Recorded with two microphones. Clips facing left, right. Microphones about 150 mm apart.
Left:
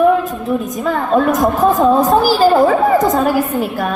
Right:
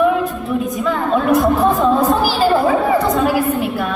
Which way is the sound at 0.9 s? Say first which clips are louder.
Left 2 dB; 45° left (ahead or behind).